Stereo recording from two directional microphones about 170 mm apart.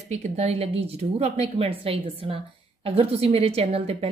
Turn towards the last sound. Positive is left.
turn(degrees=-35)  # may be behind; listen again after turning